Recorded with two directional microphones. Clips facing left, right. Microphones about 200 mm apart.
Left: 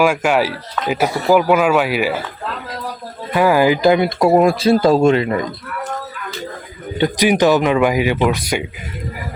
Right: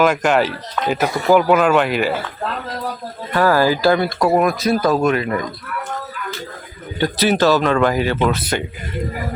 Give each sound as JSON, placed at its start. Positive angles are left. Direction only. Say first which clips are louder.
{"t": 0.0, "sound": "speech", "louder": "even", "side_deg": 5}
{"t": 3.3, "sound": "speech", "louder": "left 2 dB", "side_deg": 15}
{"t": 7.0, "sound": "speech", "louder": "left 2 dB", "side_deg": 15}